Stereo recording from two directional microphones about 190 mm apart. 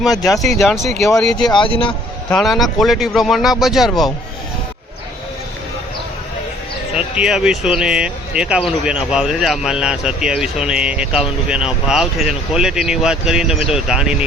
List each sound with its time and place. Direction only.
0.3 s speech: centre (ahead or behind)
1.4 s speech: 25° left (ahead or behind)
2.3 s speech: centre (ahead or behind)
6.9 s speech: 5° right (ahead or behind)